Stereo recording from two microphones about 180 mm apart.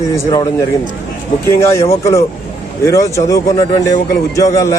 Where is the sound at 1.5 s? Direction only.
15° left (ahead or behind).